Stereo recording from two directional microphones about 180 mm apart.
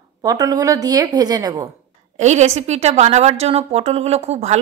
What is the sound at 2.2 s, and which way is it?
A woman's voice, 40° right (ahead or behind).